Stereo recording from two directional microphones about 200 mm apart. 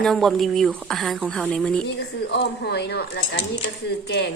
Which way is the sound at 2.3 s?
60° left (ahead or behind).